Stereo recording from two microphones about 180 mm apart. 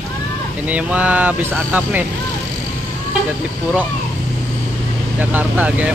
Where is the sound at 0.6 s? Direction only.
10° right (ahead or behind).